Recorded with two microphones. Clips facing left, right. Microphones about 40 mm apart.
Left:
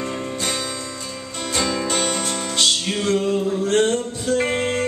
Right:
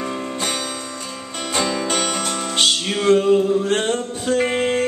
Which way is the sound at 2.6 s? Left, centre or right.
Right.